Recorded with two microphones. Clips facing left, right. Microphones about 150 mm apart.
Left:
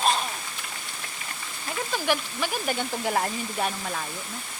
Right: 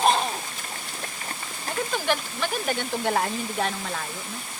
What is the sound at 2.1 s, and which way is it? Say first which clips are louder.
Speech: left 2 dB; 5° left (ahead or behind).